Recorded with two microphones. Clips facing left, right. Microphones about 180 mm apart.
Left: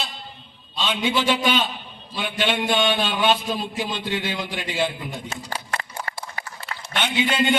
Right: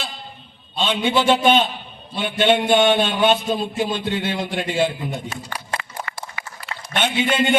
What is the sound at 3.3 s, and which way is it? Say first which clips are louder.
Speech: right 4 dB; 25° right (ahead or behind).